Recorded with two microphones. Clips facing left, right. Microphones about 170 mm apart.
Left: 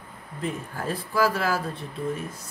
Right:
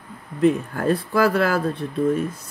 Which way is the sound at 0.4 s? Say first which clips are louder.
Right 12 dB; 65° right (ahead or behind).